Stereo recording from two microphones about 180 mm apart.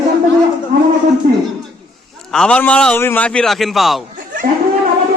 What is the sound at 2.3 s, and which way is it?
A man's voice, 5° left (ahead or behind).